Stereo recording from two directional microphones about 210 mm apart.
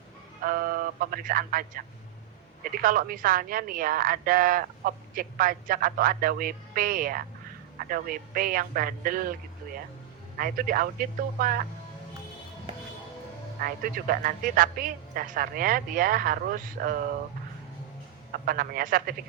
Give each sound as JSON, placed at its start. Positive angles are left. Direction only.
{"t": 0.4, "sound": "speech", "side_deg": -45}
{"t": 2.8, "sound": "a woman's voice", "side_deg": -40}
{"t": 10.3, "sound": "speech", "side_deg": -40}
{"t": 13.6, "sound": "a woman's voice", "side_deg": -40}
{"t": 18.3, "sound": "speech", "side_deg": -45}